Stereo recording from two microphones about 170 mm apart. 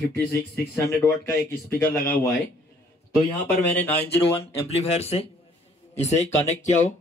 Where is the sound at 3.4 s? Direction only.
15° left (ahead or behind).